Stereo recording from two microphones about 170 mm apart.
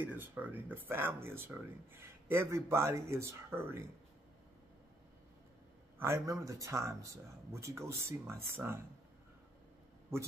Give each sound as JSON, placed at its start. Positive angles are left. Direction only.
{"t": 0.0, "sound": "speech", "side_deg": -10}
{"t": 5.9, "sound": "speech", "side_deg": -15}